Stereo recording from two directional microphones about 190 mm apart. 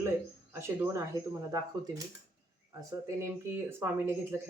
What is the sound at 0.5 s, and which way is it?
Speech, 15° right (ahead or behind).